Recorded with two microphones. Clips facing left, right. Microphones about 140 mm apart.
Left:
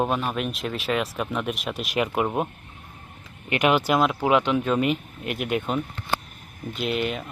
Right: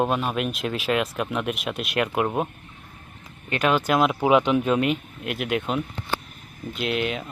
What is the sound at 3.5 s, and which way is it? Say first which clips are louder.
Speech: left 1 dB; 10° left (ahead or behind).